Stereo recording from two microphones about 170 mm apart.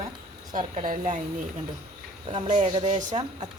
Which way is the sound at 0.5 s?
40° right (ahead or behind).